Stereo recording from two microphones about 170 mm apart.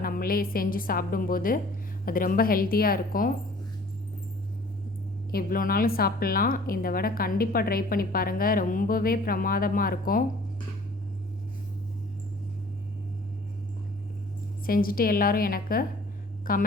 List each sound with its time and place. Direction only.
0.0 s a woman's voice: 60° left (ahead or behind)
5.3 s a woman's voice: 60° left (ahead or behind)
14.7 s a woman's voice: 60° left (ahead or behind)